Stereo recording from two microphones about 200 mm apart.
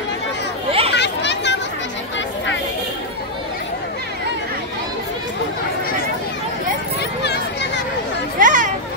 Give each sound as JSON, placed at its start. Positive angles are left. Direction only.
{"t": 0.7, "sound": "chatter", "side_deg": -30}
{"t": 0.9, "sound": "a sound", "side_deg": 60}
{"t": 8.4, "sound": "children playing", "side_deg": -40}